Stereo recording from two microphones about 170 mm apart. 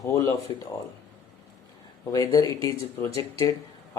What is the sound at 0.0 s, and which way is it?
Speech, 15° left (ahead or behind).